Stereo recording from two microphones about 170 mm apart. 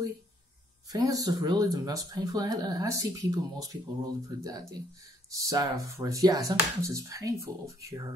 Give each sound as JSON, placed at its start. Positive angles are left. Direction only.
{"t": 0.8, "sound": "speech", "side_deg": -20}